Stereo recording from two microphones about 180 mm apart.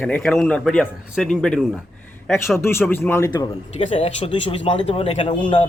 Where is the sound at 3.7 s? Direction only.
35° left (ahead or behind).